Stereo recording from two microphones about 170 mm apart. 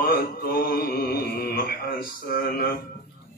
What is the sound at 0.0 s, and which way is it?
Mantra, 65° left (ahead or behind).